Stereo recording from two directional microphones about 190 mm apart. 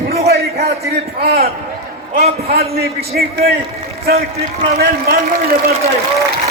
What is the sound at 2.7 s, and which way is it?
Speech, 55° right (ahead or behind).